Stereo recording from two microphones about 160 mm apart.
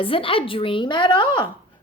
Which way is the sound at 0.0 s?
35° left (ahead or behind).